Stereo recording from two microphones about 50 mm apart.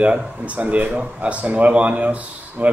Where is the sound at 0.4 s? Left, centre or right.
Right.